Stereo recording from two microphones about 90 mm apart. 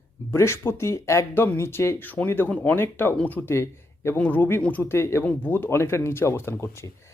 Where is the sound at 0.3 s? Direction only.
30° left (ahead or behind).